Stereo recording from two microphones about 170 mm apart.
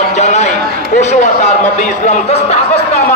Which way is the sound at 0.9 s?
45° left (ahead or behind).